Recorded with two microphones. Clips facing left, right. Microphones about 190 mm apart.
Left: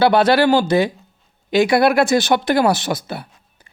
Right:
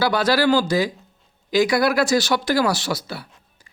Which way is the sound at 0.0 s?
60° left (ahead or behind).